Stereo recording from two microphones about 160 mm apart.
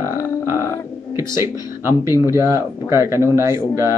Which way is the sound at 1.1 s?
15° right (ahead or behind).